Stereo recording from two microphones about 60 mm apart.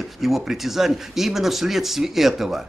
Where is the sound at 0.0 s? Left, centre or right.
Centre.